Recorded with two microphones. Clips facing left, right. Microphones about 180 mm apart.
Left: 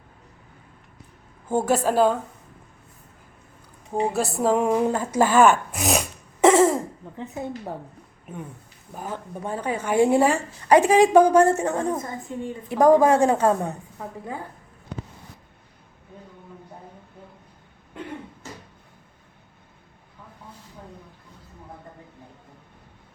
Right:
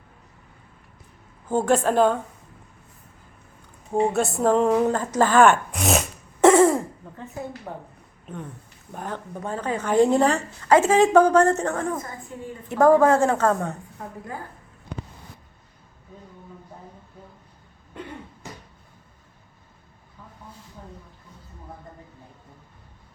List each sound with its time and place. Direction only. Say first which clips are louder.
1.5 s a woman's voice: right 1 dB; 10° left (ahead or behind)
4.0 s a woman's voice: right 1 dB; centre (ahead or behind)
4.5 s a sound: right 2 dB; 10° left (ahead or behind)
7.4 s a woman's voice: left 2 dB; 25° left (ahead or behind)
8.3 s a woman's voice: right 1 dB; 10° left (ahead or behind)